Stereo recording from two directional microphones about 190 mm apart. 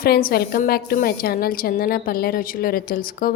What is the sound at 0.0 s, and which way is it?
Speech, 50° left (ahead or behind).